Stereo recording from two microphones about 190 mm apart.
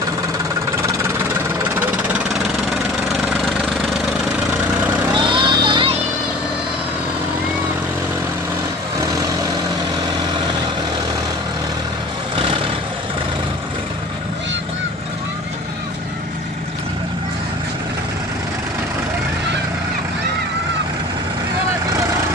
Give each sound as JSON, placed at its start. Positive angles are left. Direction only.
{"t": 1.8, "sound": "engine", "side_deg": -5}
{"t": 5.1, "sound": "a sound", "side_deg": -25}
{"t": 12.4, "sound": "vehicle", "side_deg": -30}